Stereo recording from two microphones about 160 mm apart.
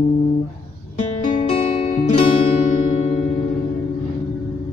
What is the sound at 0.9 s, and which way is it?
Music, 50° left (ahead or behind).